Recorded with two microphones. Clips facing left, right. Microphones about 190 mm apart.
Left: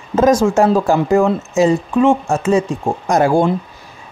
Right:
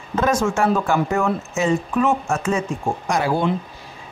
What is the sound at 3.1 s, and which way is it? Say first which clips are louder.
Speech: left 7 dB; 45° left (ahead or behind).